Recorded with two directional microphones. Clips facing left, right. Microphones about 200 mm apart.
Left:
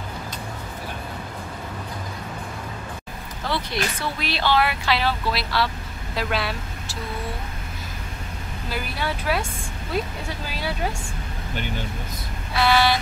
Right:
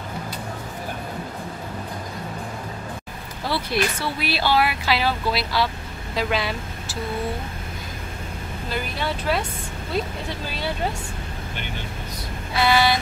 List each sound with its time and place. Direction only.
3.4 s speech: 5° right (ahead or behind)
8.6 s speech: 5° left (ahead or behind)
12.5 s speech: centre (ahead or behind)